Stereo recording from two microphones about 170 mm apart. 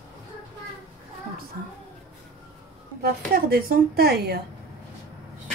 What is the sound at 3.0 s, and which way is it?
A woman's voice, 60° right (ahead or behind).